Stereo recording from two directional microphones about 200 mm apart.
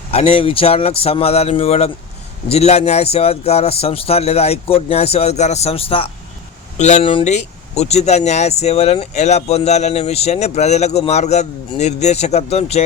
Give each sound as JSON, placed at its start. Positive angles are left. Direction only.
{"t": 0.1, "sound": "a man's voice", "side_deg": 30}